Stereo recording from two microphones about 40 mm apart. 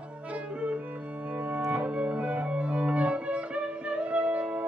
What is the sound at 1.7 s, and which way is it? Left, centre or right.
Music, right.